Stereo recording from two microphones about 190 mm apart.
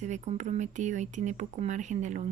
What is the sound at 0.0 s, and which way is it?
Speech, 40° right (ahead or behind).